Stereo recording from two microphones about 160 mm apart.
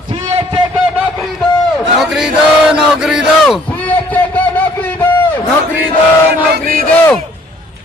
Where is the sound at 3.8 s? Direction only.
10° left (ahead or behind).